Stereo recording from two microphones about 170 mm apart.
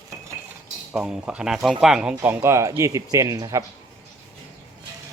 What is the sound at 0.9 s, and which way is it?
Speech, 5° right (ahead or behind).